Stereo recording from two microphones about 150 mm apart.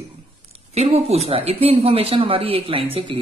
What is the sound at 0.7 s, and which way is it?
Speech, 45° right (ahead or behind).